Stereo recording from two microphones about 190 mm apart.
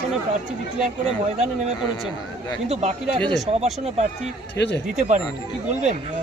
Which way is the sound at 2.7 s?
35° right (ahead or behind).